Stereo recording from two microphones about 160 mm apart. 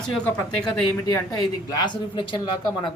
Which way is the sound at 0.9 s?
20° left (ahead or behind).